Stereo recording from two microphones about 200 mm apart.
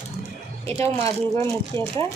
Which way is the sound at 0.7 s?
15° left (ahead or behind).